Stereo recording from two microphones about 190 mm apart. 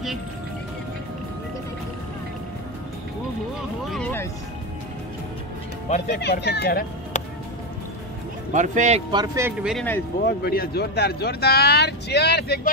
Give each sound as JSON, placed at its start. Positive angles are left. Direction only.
{"t": 3.8, "sound": "speech", "side_deg": 0}
{"t": 5.9, "sound": "speech", "side_deg": 40}
{"t": 6.1, "sound": "speech", "side_deg": 60}
{"t": 8.5, "sound": "speech", "side_deg": -40}
{"t": 9.1, "sound": "speech", "side_deg": -20}
{"t": 9.6, "sound": "speech", "side_deg": -5}
{"t": 10.2, "sound": "speech", "side_deg": 55}